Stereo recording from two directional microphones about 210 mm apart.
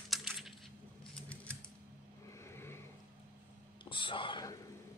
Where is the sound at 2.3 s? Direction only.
10° left (ahead or behind).